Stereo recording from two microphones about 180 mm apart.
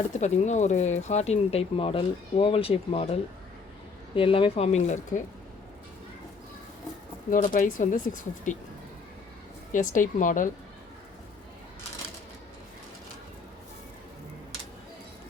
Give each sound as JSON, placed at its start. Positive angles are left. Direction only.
{"t": 0.1, "sound": "speech", "side_deg": 40}
{"t": 7.3, "sound": "speech", "side_deg": 50}
{"t": 9.7, "sound": "speech", "side_deg": 45}